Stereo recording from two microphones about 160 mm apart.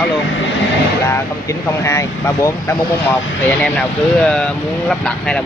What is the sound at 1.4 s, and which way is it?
Speech, 20° left (ahead or behind).